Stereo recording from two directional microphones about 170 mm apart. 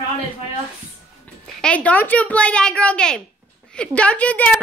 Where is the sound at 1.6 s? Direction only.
5° left (ahead or behind).